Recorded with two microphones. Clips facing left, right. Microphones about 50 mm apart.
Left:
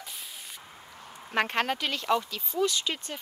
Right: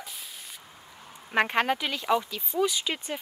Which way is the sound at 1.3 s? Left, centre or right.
Centre.